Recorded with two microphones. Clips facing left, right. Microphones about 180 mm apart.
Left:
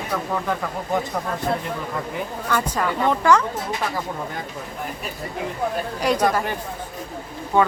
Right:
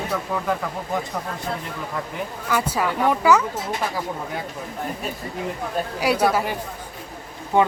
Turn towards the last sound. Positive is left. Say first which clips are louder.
# even
turn(degrees=-15)  # may be behind; listen again after turning